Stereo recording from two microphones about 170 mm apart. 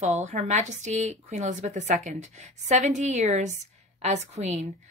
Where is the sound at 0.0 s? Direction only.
40° right (ahead or behind).